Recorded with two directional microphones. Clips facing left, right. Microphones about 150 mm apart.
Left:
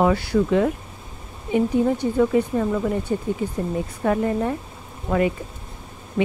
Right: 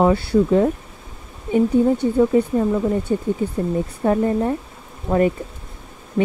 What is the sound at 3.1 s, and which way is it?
Speech, 30° right (ahead or behind).